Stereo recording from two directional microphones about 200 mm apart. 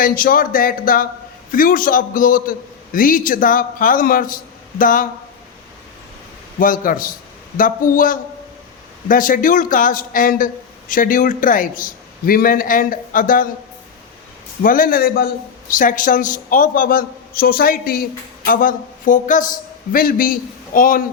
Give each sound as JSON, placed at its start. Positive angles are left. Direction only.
{"t": 0.0, "sound": "a woman's voice", "side_deg": 45}
{"t": 6.6, "sound": "a man's voice", "side_deg": 45}
{"t": 14.6, "sound": "a woman's voice", "side_deg": 45}